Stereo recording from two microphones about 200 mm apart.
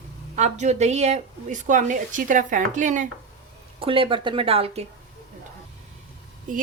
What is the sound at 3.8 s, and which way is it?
Speech, 25° right (ahead or behind).